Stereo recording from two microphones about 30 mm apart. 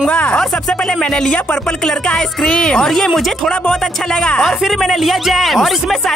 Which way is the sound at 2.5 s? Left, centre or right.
Left.